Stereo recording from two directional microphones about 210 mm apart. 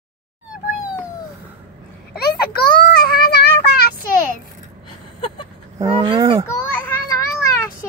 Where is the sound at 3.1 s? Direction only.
50° left (ahead or behind).